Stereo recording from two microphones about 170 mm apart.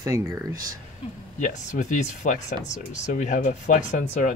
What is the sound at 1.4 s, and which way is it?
Speech, 45° left (ahead or behind).